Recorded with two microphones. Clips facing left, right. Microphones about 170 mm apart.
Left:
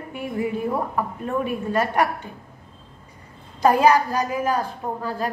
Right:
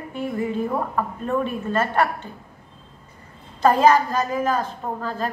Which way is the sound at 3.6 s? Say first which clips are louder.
Even; 10° left (ahead or behind).